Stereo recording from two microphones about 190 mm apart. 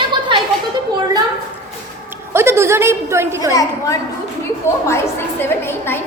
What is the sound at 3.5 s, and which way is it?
A woman's voice, 20° left (ahead or behind).